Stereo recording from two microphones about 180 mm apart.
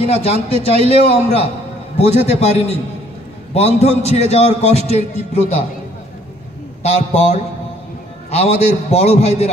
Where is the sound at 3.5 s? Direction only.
35° left (ahead or behind).